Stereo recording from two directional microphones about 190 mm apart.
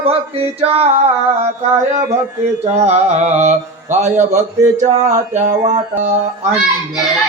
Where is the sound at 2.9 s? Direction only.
35° right (ahead or behind).